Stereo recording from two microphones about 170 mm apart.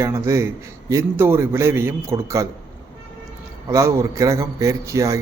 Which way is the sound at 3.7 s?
15° right (ahead or behind).